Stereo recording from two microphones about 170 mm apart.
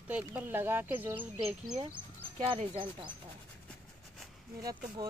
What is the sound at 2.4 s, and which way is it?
Speech, 35° right (ahead or behind).